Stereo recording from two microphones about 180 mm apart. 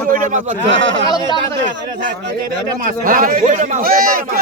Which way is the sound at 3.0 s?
50° right (ahead or behind).